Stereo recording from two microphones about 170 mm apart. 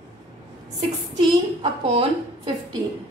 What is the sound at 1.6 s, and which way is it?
Speech, 35° right (ahead or behind).